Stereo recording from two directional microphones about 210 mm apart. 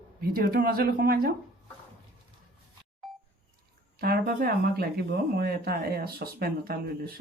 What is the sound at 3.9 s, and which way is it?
Speech, 45° right (ahead or behind).